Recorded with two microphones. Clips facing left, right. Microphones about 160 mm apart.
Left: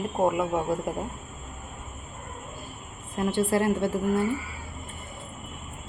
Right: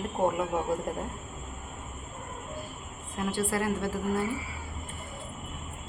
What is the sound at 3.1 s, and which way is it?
Speech, 25° left (ahead or behind).